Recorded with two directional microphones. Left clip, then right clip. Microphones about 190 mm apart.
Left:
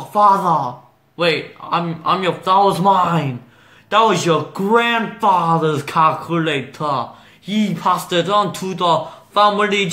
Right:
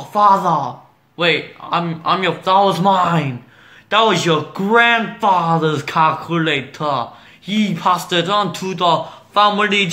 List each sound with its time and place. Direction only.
0.0 s speech: centre (ahead or behind)